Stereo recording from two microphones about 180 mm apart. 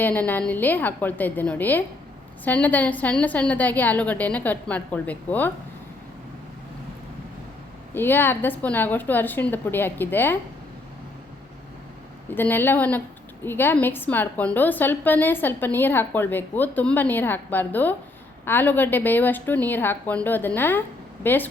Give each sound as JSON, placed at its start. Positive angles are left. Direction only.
{"t": 0.0, "sound": "a woman's voice", "side_deg": 10}
{"t": 7.9, "sound": "a woman's voice", "side_deg": 10}
{"t": 12.3, "sound": "a woman's voice", "side_deg": 10}